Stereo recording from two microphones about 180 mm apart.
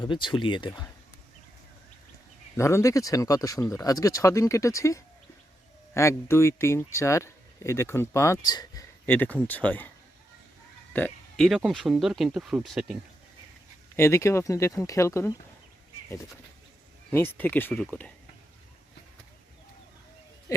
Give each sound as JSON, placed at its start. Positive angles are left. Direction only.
{"t": 0.0, "sound": "speech", "side_deg": 25}
{"t": 2.6, "sound": "speech", "side_deg": 15}
{"t": 8.4, "sound": "a sound", "side_deg": 20}
{"t": 9.1, "sound": "speech", "side_deg": 10}
{"t": 10.9, "sound": "speech", "side_deg": 5}
{"t": 13.9, "sound": "speech", "side_deg": 15}
{"t": 17.1, "sound": "speech", "side_deg": 10}
{"t": 20.5, "sound": "a sound", "side_deg": 20}